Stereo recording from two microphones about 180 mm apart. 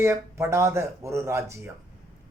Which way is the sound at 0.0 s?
15° right (ahead or behind).